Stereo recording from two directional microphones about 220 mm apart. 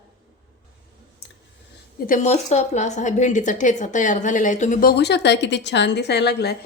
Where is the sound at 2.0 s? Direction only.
35° left (ahead or behind).